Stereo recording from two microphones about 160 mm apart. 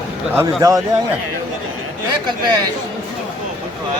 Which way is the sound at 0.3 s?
20° right (ahead or behind).